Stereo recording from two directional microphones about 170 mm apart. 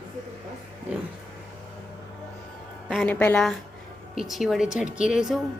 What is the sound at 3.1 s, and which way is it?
Speech, 10° left (ahead or behind).